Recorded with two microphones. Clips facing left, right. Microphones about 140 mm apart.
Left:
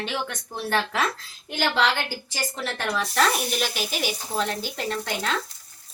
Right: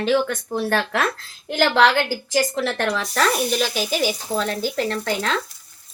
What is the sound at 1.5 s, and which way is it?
A woman's voice, 90° right.